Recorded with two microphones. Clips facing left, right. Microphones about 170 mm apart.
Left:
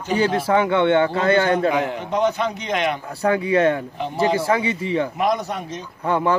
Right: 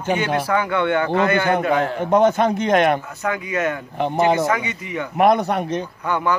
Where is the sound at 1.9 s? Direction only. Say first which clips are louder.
Right 5 dB; 50° right (ahead or behind).